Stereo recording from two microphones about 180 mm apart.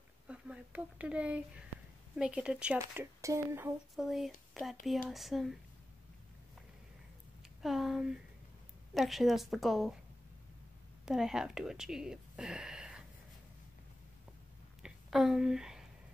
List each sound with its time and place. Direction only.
0.3 s a woman's voice: 5° right (ahead or behind)
3.9 s a woman's voice: centre (ahead or behind)
7.6 s a woman's voice: centre (ahead or behind)
11.1 s speech: 5° right (ahead or behind)
14.8 s a sound: centre (ahead or behind)